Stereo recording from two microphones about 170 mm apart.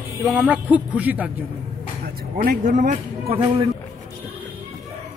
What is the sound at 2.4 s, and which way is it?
Speech, 55° right (ahead or behind).